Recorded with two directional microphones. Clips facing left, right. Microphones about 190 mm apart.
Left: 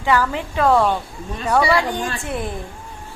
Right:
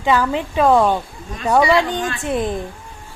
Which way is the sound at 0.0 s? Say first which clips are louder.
Right 2 dB; 20° right (ahead or behind).